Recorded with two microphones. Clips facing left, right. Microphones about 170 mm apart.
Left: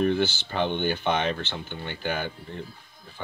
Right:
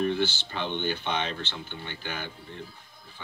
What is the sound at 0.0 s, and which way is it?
Speech, 50° left (ahead or behind).